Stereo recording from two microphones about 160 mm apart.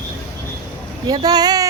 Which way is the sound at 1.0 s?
25° right (ahead or behind).